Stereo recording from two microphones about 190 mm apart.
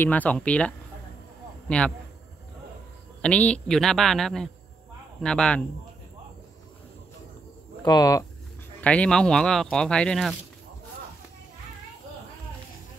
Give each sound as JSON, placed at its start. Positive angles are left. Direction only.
{"t": 0.0, "sound": "speech", "side_deg": 10}
{"t": 3.2, "sound": "speech", "side_deg": 5}
{"t": 7.8, "sound": "speech", "side_deg": 20}
{"t": 8.8, "sound": "speech", "side_deg": 5}